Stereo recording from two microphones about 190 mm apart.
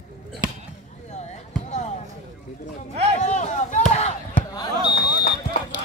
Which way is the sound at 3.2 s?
40° left (ahead or behind).